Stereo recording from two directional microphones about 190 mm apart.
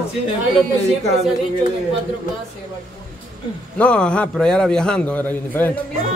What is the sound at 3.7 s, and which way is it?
A man's voice, 5° left (ahead or behind).